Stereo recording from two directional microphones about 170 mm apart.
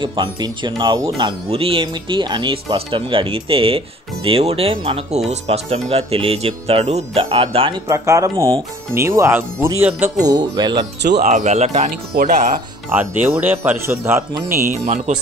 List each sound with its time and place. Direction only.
0.0 s speech: 25° right (ahead or behind)
7.9 s speech: 20° right (ahead or behind)
10.1 s speech: 25° right (ahead or behind)
11.0 s speech: 80° right
11.2 s speech: 40° right (ahead or behind)
13.3 s speech: 10° right (ahead or behind)
14.7 s speech: 45° right (ahead or behind)